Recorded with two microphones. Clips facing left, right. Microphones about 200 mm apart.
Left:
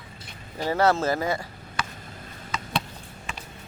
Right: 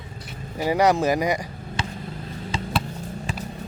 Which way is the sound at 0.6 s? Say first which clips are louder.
Right 3 dB; 15° right (ahead or behind).